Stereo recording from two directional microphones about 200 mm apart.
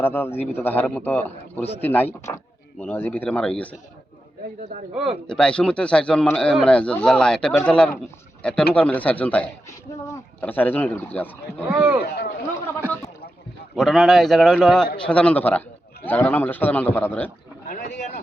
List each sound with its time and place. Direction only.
0.0 s a man's voice: 10° left (ahead or behind)
4.9 s a man's voice: centre (ahead or behind)
11.7 s speech: 5° right (ahead or behind)
13.7 s a man's voice: centre (ahead or behind)
17.7 s a sound: 35° left (ahead or behind)